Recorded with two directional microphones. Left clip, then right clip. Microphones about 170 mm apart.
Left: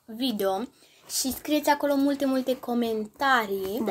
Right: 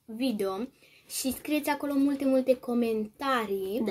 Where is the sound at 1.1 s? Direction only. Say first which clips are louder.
Left 4 dB; 10° right (ahead or behind).